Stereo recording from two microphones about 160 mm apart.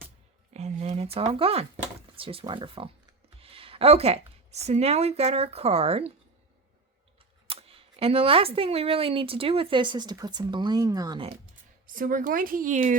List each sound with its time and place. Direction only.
0.5 s a sound: 45° right (ahead or behind)
1.2 s speech: 35° right (ahead or behind)
7.4 s speech: 35° right (ahead or behind)
11.9 s speech: 60° right (ahead or behind)